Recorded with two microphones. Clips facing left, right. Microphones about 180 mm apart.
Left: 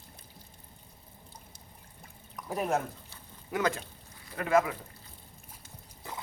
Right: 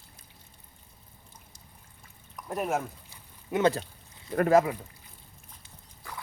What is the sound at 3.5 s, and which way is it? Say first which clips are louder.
Speech: right 5 dB; 25° right (ahead or behind).